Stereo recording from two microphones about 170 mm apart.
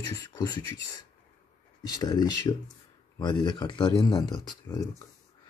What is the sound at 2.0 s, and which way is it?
Speech, 25° left (ahead or behind).